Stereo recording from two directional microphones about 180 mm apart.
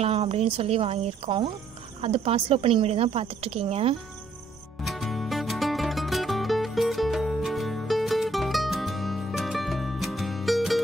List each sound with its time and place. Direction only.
0.0 s speech: 35° right (ahead or behind)
4.8 s music: centre (ahead or behind)